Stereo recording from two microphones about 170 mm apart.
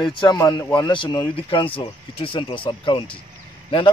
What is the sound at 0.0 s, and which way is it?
Speech, 25° left (ahead or behind).